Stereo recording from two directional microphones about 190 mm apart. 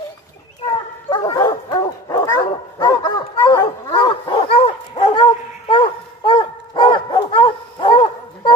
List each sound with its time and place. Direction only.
0.7 s dog: 20° left (ahead or behind)